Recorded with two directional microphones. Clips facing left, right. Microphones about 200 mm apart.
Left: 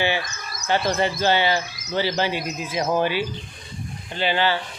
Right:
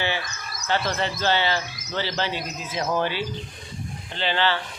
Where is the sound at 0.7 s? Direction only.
15° left (ahead or behind).